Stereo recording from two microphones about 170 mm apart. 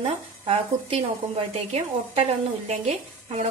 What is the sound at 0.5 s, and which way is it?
Speech, 35° right (ahead or behind).